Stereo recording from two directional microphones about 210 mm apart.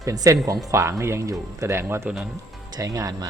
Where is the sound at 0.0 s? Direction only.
15° right (ahead or behind).